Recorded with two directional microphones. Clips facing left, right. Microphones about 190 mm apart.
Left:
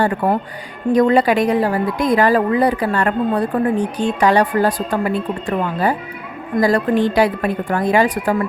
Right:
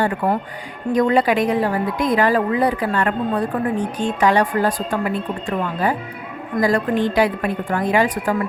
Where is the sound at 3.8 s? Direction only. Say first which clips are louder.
Left 3 dB; 70° left (ahead or behind).